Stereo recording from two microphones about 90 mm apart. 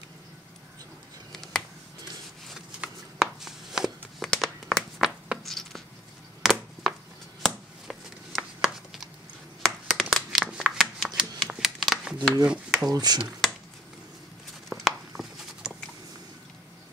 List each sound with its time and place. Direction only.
1.3 s finger snapping: 5° left (ahead or behind)
2.8 s a sound: 5° right (ahead or behind)
5.4 s patter: 5° left (ahead or behind)
6.4 s a sound: centre (ahead or behind)
8.5 s chopping: centre (ahead or behind)
9.7 s shuffling cards: centre (ahead or behind)
12.4 s speech: centre (ahead or behind)
12.9 s speech: 50° right (ahead or behind)
14.7 s a sound: centre (ahead or behind)